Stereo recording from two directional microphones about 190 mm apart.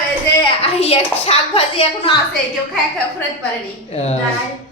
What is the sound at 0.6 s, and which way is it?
A woman's voice, 30° left (ahead or behind).